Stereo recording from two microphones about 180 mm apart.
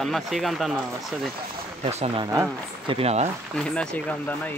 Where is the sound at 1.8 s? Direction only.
35° right (ahead or behind).